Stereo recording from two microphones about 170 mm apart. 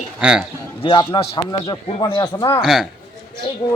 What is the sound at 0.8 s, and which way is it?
A man's voice, 30° left (ahead or behind).